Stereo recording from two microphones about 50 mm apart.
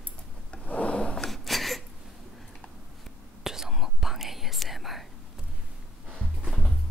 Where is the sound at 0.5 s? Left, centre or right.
Left.